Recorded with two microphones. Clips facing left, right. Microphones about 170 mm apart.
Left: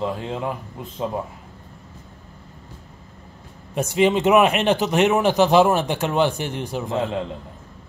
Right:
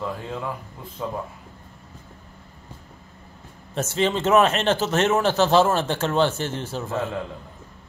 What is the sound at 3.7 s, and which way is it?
A man's voice, 15° left (ahead or behind).